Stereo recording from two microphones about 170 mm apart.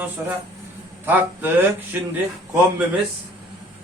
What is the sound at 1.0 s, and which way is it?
Speech, 10° right (ahead or behind).